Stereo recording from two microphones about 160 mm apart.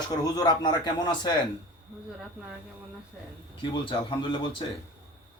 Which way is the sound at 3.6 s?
30° left (ahead or behind).